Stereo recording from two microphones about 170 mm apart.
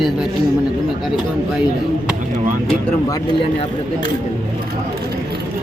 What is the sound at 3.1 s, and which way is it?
Speech, 30° left (ahead or behind).